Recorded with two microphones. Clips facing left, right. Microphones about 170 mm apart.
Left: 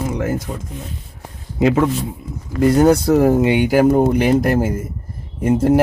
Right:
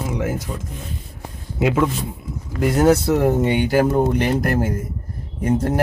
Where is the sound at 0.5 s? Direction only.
35° left (ahead or behind).